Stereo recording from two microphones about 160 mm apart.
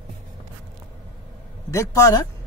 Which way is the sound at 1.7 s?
20° left (ahead or behind).